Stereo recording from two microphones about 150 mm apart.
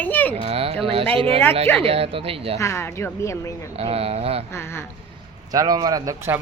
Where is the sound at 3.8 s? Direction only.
40° right (ahead or behind).